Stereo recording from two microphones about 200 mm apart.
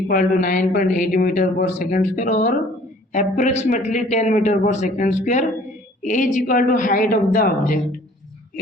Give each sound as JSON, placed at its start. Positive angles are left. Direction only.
{"t": 0.1, "sound": "a man's voice", "side_deg": 45}